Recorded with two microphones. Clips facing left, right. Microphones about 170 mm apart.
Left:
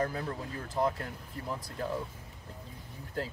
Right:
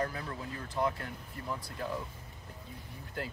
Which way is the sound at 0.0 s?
40° left (ahead or behind).